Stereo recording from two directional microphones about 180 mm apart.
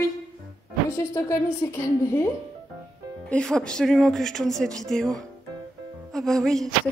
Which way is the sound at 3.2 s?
5° left (ahead or behind).